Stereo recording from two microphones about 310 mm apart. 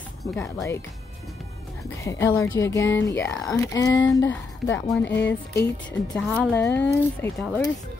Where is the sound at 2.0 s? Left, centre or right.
Centre.